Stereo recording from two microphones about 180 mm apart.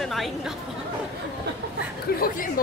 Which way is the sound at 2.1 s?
50° left (ahead or behind).